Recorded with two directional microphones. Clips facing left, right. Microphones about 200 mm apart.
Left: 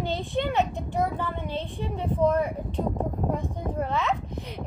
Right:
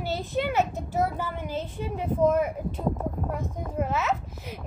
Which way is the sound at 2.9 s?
25° left (ahead or behind).